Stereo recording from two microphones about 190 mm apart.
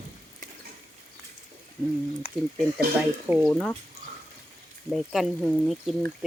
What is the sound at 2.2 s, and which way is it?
Speech, 30° left (ahead or behind).